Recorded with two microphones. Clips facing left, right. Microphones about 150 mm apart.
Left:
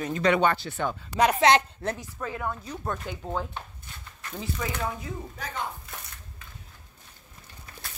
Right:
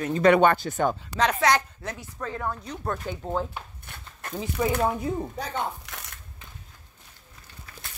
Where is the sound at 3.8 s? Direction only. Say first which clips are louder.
Right 3 dB; 60° right (ahead or behind).